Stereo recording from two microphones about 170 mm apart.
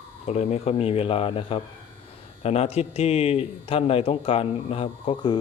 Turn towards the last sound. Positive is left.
turn(degrees=30)  # may be behind; listen again after turning